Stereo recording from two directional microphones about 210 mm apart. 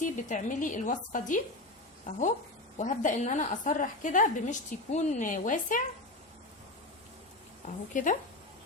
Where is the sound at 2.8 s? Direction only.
35° left (ahead or behind).